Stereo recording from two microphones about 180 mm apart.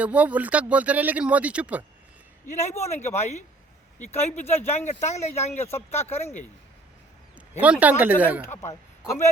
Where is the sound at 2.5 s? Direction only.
40° left (ahead or behind).